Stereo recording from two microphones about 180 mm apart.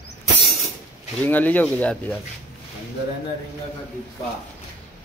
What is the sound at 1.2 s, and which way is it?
Speech, 10° left (ahead or behind).